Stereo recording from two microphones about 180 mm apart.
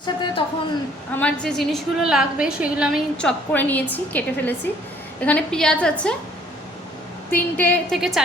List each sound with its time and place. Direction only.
0.0 s a man's voice: 25° left (ahead or behind)
1.1 s a woman's voice: 5° left (ahead or behind)
3.2 s a woman's voice: 5° left (ahead or behind)
7.3 s a woman's voice: 10° left (ahead or behind)